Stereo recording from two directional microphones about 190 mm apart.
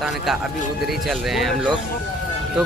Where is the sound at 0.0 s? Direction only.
Centre (ahead or behind).